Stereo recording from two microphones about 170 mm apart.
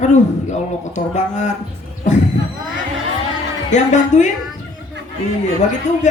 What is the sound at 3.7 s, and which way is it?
Speech, 45° left (ahead or behind).